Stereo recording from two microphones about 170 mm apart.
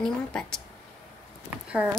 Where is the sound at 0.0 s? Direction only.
5° left (ahead or behind).